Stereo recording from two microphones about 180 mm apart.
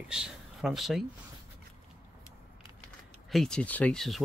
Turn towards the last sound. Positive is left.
turn(degrees=0)  # may be behind; listen again after turning